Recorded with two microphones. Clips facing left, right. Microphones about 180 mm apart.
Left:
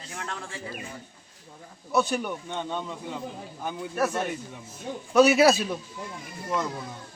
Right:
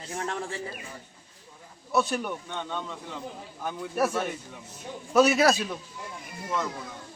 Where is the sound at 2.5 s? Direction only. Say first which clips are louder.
Left 2 dB; 15° left (ahead or behind).